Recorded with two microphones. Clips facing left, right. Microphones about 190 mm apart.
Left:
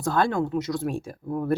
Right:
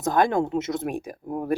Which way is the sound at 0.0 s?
15° right (ahead or behind).